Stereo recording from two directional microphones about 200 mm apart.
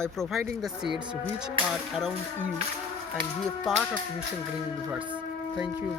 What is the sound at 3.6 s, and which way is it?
Speech, centre (ahead or behind).